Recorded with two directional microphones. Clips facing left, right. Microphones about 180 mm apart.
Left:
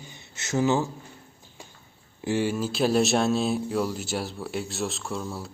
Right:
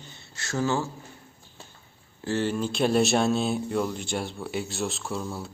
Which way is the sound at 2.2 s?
10° left (ahead or behind).